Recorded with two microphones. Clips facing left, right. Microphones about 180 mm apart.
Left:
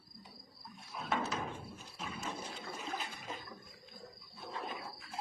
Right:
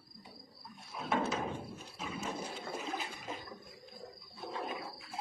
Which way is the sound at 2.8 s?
Centre (ahead or behind).